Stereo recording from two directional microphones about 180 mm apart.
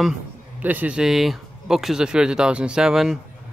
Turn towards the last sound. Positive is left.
turn(degrees=-5)  # may be behind; listen again after turning